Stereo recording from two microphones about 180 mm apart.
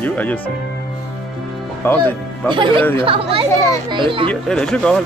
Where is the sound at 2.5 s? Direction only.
25° right (ahead or behind).